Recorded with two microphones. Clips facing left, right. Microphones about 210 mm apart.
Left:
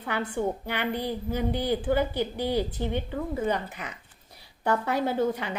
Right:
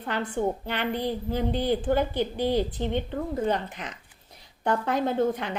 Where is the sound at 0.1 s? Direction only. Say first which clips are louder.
Right 1 dB; 10° left (ahead or behind).